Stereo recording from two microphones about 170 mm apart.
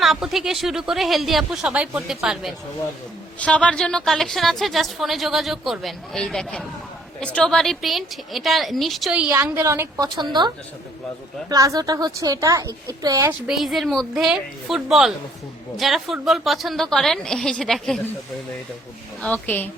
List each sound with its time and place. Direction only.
0.0 s a woman's voice: centre (ahead or behind)
11.4 s a woman's voice: 20° right (ahead or behind)
13.5 s a woman's voice: centre (ahead or behind)
19.2 s a woman's voice: 10° left (ahead or behind)